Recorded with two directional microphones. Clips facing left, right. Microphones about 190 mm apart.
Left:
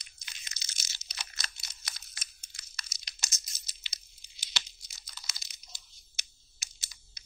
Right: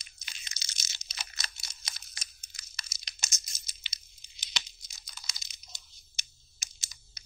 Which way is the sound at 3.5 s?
15° right (ahead or behind).